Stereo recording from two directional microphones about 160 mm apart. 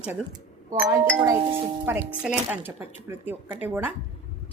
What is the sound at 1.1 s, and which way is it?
Speech, 20° right (ahead or behind).